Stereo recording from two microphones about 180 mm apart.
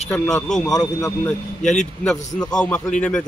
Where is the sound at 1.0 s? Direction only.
15° left (ahead or behind).